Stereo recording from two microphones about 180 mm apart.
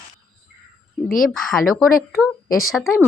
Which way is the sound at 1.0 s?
50° left (ahead or behind).